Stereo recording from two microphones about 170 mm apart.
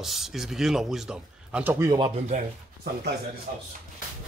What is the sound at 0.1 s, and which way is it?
A man's voice, centre (ahead or behind).